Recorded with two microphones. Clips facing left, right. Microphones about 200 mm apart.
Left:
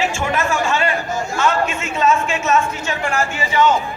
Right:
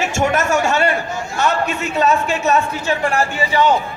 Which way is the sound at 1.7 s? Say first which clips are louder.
Right 1 dB; 40° right (ahead or behind).